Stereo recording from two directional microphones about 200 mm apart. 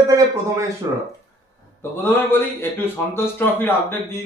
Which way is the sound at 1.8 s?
10° left (ahead or behind).